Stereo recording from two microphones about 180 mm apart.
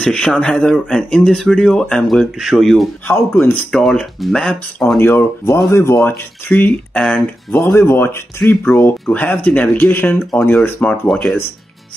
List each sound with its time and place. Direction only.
0.0 s speech: 5° left (ahead or behind)
7.8 s speech: 15° left (ahead or behind)